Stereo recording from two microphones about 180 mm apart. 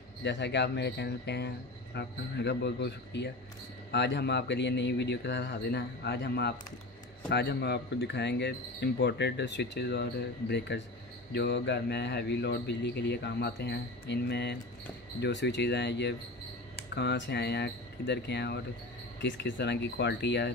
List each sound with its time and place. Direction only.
0.2 s speech: 75° left (ahead or behind)
19.2 s speech: 90° left; by 20.5 s 75° left (ahead or behind)